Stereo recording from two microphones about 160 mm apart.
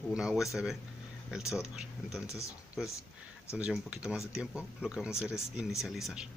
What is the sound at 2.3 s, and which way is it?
Speech, 20° left (ahead or behind).